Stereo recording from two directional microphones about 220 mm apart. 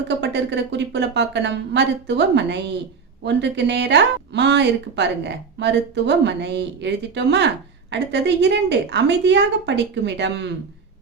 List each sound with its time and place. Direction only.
0.2 s a woman's voice: 50° right (ahead or behind)